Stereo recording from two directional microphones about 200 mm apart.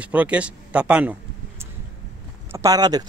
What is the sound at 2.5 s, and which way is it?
Speech, 15° right (ahead or behind).